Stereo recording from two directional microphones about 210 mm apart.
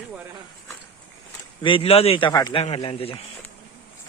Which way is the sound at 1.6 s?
25° left (ahead or behind).